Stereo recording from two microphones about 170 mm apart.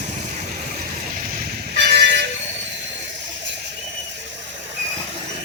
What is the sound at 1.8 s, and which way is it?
Vehicle, 70° right (ahead or behind).